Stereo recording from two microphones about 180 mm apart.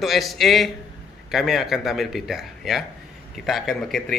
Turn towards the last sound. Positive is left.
turn(degrees=0)  # may be behind; listen again after turning